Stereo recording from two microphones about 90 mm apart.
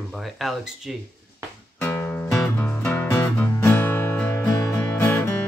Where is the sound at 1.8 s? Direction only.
20° left (ahead or behind).